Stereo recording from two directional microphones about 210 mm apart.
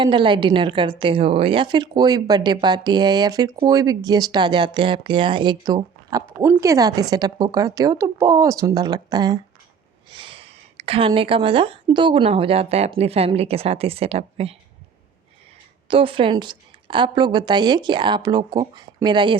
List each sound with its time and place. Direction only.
0.0 s a woman's voice: 20° right (ahead or behind)
15.9 s a woman's voice: 25° right (ahead or behind)